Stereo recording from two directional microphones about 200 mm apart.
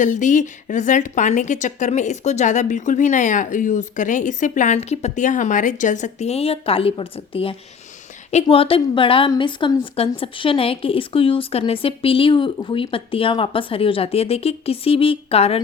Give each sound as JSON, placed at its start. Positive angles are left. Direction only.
{"t": 0.0, "sound": "a woman's voice", "side_deg": 40}